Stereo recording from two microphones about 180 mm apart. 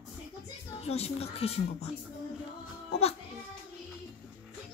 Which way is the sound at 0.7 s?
35° left (ahead or behind).